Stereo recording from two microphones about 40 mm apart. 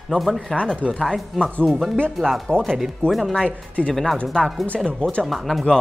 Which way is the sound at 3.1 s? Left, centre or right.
Centre.